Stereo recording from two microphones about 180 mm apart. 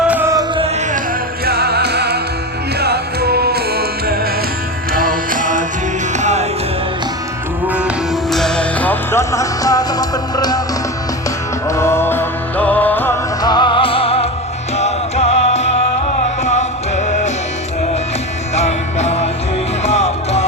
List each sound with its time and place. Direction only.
0.1 s music: 15° right (ahead or behind)
1.5 s music: 60° right (ahead or behind); by 6.4 s 40° right (ahead or behind)
7.7 s music: 5° right (ahead or behind); by 10.6 s 20° left (ahead or behind)
11.7 s music: 15° left (ahead or behind)
13.4 s music: 25° left (ahead or behind); by 17.3 s 40° left (ahead or behind)
18.5 s music: 40° left (ahead or behind)